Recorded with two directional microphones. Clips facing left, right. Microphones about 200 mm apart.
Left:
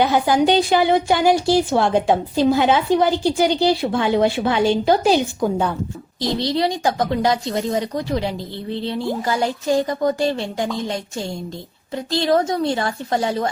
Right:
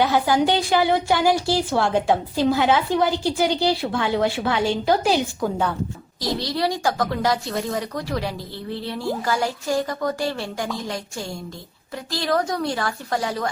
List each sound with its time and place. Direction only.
0.0 s a woman's voice: 20° left (ahead or behind)
12.1 s a woman's voice: 25° left (ahead or behind)